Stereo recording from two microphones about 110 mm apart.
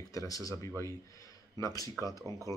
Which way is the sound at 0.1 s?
30° left (ahead or behind).